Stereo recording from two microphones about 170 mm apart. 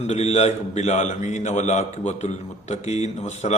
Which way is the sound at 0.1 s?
40° left (ahead or behind).